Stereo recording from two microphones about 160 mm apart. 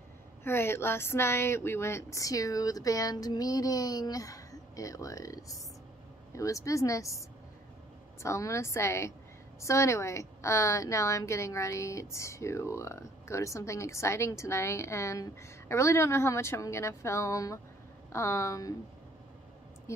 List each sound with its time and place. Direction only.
0.4 s a woman's voice: 15° left (ahead or behind)